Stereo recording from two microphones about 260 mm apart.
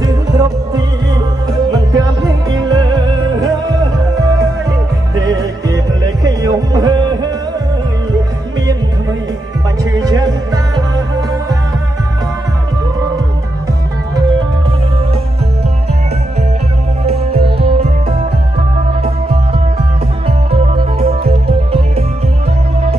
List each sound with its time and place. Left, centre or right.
0.0 s music: centre
9.9 s music: centre
17.0 s music: right
20.2 s music: right